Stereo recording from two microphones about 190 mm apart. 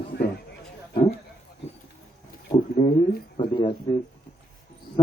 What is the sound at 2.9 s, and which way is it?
Speech, 50° left (ahead or behind).